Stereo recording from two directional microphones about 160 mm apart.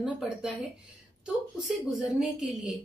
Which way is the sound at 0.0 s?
5° right (ahead or behind).